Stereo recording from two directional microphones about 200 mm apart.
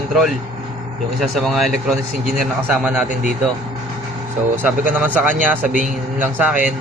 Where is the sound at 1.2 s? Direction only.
Centre (ahead or behind).